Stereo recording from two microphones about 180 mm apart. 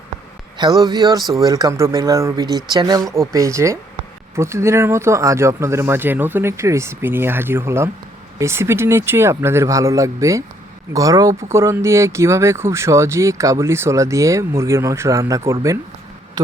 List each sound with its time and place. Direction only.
0.5 s a man's voice: 20° right (ahead or behind)